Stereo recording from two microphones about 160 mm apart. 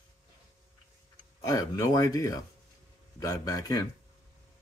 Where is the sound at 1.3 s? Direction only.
20° left (ahead or behind).